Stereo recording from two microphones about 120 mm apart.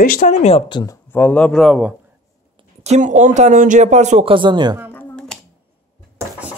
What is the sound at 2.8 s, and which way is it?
Speech, 80° right.